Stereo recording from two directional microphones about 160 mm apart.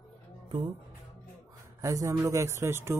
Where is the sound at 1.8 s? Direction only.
20° right (ahead or behind).